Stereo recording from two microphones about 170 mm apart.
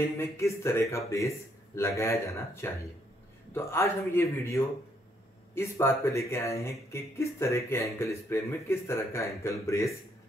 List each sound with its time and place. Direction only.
0.0 s speech: 15° left (ahead or behind)